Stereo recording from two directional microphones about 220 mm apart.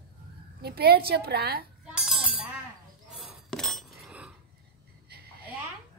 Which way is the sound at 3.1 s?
Centre (ahead or behind).